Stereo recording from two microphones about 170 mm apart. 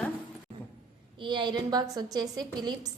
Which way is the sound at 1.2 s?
25° right (ahead or behind).